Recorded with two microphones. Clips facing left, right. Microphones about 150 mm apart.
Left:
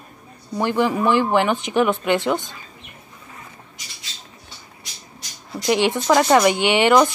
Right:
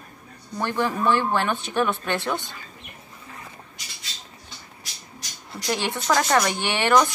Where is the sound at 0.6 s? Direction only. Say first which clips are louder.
Left 4 dB; 15° left (ahead or behind).